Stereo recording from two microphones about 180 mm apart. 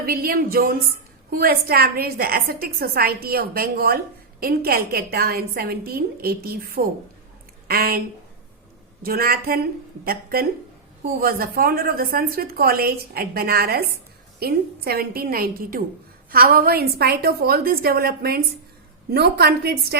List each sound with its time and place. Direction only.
0.0 s a woman's voice: 55° right (ahead or behind)
9.0 s a woman's voice: 55° right (ahead or behind)